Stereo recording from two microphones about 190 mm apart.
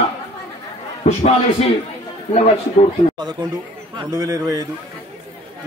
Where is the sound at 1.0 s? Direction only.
35° left (ahead or behind).